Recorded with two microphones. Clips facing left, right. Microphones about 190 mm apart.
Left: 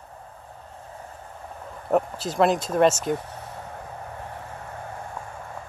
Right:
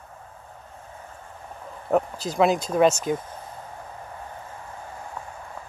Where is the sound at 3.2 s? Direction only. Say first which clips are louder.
Left 1 dB; 70° left (ahead or behind).